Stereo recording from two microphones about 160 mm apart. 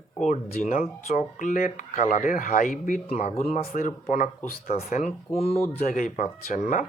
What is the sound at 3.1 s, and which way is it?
Speech, 45° left (ahead or behind).